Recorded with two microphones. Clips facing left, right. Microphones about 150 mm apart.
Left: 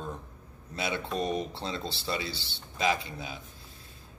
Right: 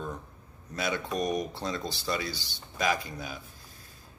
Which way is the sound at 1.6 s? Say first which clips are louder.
Right 2 dB; 25° left (ahead or behind).